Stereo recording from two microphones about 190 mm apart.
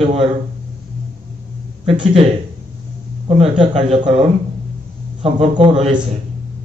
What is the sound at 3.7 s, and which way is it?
A man's voice, 25° right (ahead or behind).